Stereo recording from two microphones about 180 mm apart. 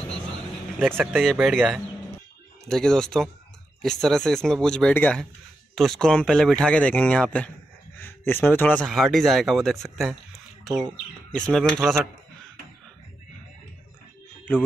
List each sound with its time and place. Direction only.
1.2 s a man's voice: centre (ahead or behind)